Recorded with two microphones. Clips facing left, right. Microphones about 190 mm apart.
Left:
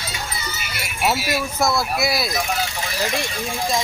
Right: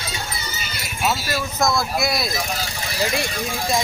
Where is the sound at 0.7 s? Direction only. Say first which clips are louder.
Left 2 dB; 65° left (ahead or behind).